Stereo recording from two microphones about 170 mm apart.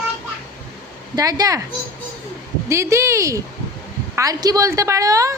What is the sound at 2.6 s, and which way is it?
A woman's voice, 15° right (ahead or behind).